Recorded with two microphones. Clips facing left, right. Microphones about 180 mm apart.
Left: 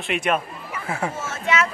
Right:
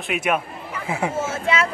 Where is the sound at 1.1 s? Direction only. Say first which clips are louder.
Right 2 dB; 30° right (ahead or behind).